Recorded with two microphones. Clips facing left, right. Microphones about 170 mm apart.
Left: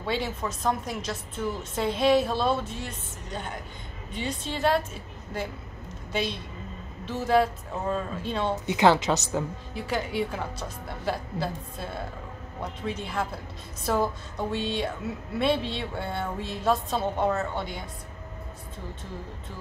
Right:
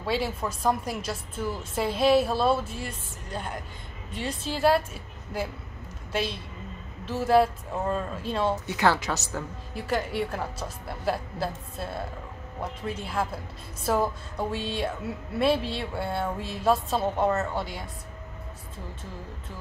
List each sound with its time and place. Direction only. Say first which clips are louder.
0.0 s speech: right 1 dB; 5° right (ahead or behind)
6.1 s speech: even; centre (ahead or behind)
8.6 s a woman's voice: left 4 dB; 20° left (ahead or behind)
9.8 s speech: right 1 dB; centre (ahead or behind)